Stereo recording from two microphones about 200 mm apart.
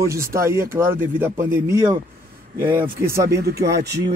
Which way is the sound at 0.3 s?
15° right (ahead or behind).